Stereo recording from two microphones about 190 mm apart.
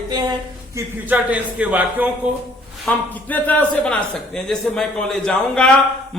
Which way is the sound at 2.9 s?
5° left (ahead or behind).